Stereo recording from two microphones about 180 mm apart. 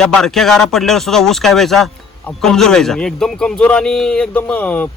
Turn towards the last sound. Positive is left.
turn(degrees=10)  # may be behind; listen again after turning